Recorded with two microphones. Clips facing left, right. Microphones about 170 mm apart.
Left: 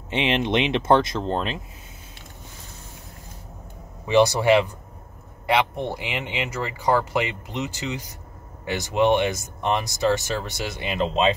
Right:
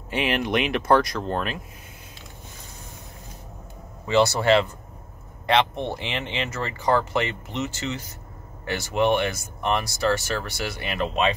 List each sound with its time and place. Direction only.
0.1 s speech: 25° left (ahead or behind)
4.0 s speech: 15° left (ahead or behind)